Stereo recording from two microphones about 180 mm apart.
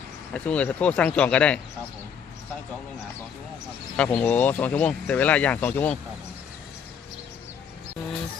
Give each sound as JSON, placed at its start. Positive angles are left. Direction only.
{"t": 0.3, "sound": "speech", "side_deg": 5}
{"t": 3.9, "sound": "speech", "side_deg": 5}